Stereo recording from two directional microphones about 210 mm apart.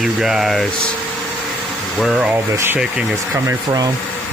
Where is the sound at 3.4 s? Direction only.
20° right (ahead or behind).